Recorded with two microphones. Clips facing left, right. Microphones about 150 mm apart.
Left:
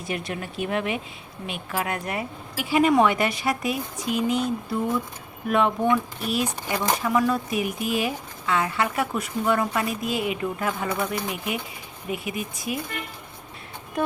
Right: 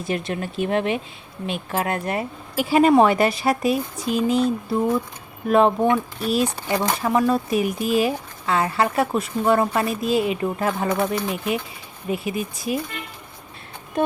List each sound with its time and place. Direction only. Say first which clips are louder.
0.1 s speech: right 4 dB; 30° right (ahead or behind)